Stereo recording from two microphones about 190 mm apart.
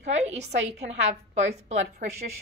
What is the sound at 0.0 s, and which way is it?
Speech, 35° right (ahead or behind).